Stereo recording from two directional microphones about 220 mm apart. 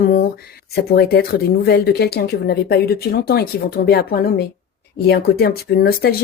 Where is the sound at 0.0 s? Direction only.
45° left (ahead or behind).